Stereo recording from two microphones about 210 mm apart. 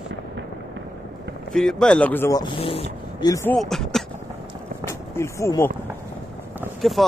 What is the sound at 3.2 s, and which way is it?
Speech, 15° left (ahead or behind).